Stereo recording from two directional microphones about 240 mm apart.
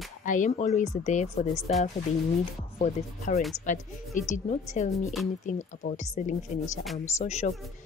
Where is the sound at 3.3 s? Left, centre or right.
Left.